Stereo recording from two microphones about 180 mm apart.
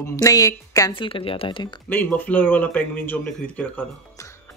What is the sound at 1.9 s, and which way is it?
Speech, 10° left (ahead or behind).